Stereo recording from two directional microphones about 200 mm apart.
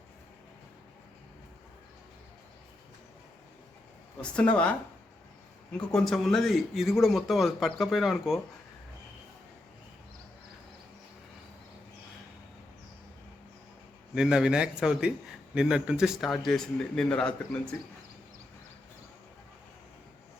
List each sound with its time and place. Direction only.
4.2 s a man's voice: 5° left (ahead or behind)
5.7 s a man's voice: 5° left (ahead or behind)
14.2 s a man's voice: 5° right (ahead or behind)